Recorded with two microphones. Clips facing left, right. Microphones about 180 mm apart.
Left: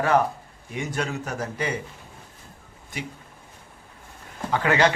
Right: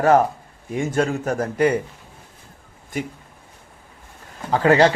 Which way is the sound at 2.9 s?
45° right (ahead or behind).